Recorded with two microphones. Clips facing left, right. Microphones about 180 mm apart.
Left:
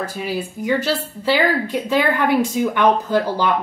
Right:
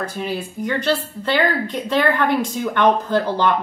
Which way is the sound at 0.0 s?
5° left (ahead or behind).